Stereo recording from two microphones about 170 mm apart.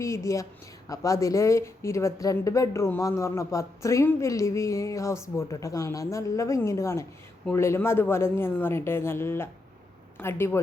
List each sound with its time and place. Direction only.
0.0 s speech: 15° left (ahead or behind)